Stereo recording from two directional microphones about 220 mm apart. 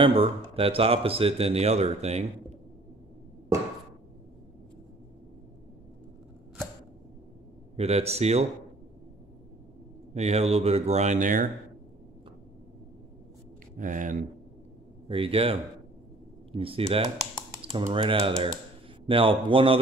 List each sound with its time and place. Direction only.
0.0 s speech: 25° right (ahead or behind)
7.7 s speech: 30° right (ahead or behind)
10.1 s speech: 30° right (ahead or behind)
13.7 s speech: 35° right (ahead or behind)
15.0 s speech: 25° right (ahead or behind)